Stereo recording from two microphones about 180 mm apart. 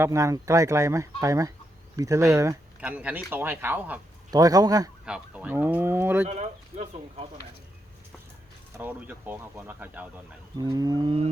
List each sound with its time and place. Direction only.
0.0 s speech: 15° right (ahead or behind)
4.3 s wild animals: 20° right (ahead or behind)
5.0 s speech: 5° right (ahead or behind)
6.2 s speech: 35° right (ahead or behind)
8.8 s speech: 10° right (ahead or behind)
10.6 s wild animals: 20° right (ahead or behind)